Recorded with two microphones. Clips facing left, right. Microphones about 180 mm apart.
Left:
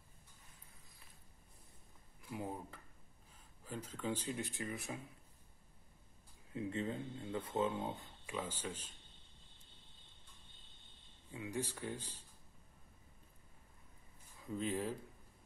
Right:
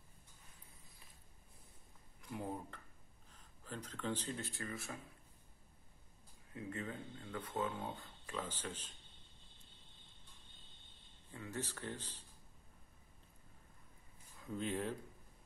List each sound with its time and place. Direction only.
2.2 s speech: 5° left (ahead or behind)
6.5 s speech: 25° left (ahead or behind)
8.3 s speech: 10° left (ahead or behind)
11.3 s speech: 10° left (ahead or behind)
14.4 s speech: centre (ahead or behind)